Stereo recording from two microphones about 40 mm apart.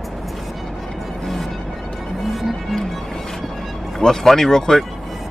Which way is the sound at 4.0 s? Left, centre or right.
Centre.